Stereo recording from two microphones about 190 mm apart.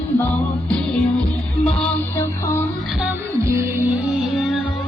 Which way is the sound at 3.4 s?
15° right (ahead or behind).